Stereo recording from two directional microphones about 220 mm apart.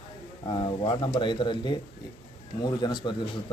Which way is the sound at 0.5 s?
20° left (ahead or behind).